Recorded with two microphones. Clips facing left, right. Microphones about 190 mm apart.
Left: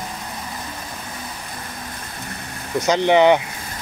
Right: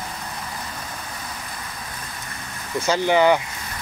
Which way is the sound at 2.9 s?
20° left (ahead or behind).